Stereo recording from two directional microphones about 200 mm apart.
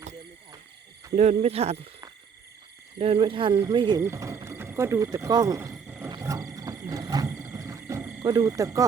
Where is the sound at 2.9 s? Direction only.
25° right (ahead or behind).